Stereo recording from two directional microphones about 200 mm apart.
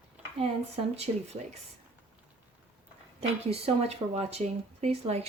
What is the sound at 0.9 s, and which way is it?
Speech, 30° right (ahead or behind).